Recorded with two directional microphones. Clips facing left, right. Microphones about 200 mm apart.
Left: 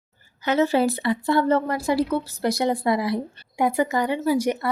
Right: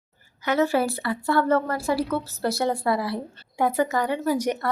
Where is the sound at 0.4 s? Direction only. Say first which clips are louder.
Left 2 dB; 25° left (ahead or behind).